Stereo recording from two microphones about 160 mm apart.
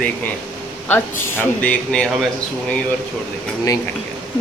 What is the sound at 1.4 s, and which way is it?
Speech, 10° left (ahead or behind).